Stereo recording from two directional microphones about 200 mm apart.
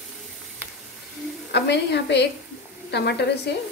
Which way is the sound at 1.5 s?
55° left (ahead or behind).